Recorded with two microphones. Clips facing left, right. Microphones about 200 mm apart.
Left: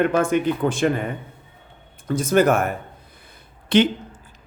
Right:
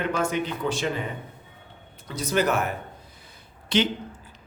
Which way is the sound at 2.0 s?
50° left (ahead or behind).